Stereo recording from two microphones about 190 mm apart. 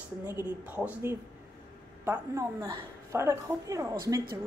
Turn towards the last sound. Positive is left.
turn(degrees=-20)  # may be behind; listen again after turning